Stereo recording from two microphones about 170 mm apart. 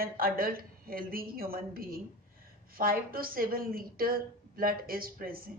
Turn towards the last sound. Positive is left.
turn(degrees=-60)  # may be behind; listen again after turning